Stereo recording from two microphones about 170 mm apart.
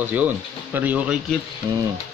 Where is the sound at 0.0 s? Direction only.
10° right (ahead or behind).